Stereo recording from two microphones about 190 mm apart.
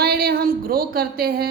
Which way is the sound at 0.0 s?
55° right (ahead or behind).